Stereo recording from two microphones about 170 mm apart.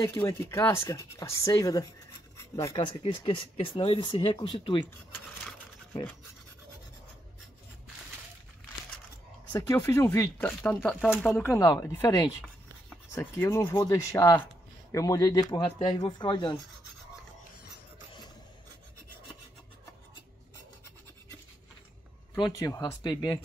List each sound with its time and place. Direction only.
0.1 s speech: 20° left (ahead or behind)
3.0 s speech: 30° left (ahead or behind)
9.5 s speech: 20° left (ahead or behind); by 11.4 s centre (ahead or behind)
11.4 s speech: 20° left (ahead or behind)
22.4 s speech: 20° left (ahead or behind)